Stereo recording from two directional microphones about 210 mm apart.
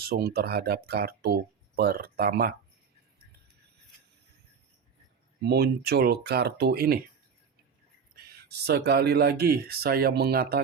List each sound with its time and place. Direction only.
0.0 s speech: 45° right (ahead or behind)
5.4 s speech: 50° right (ahead or behind)
8.1 s speech: 50° right (ahead or behind)